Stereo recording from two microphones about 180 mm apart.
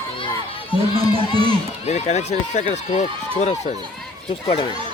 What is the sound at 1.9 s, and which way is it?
Speech, 40° left (ahead or behind).